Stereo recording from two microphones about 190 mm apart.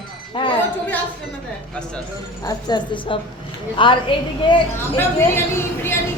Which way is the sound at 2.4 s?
20° left (ahead or behind).